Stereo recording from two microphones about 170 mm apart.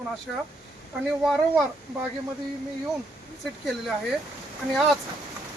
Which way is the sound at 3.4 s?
Centre (ahead or behind).